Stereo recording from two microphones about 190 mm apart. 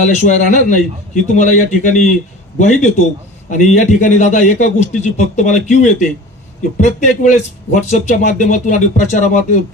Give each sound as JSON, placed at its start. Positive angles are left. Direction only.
{"t": 0.0, "sound": "speech", "side_deg": 40}
{"t": 3.4, "sound": "speech", "side_deg": 40}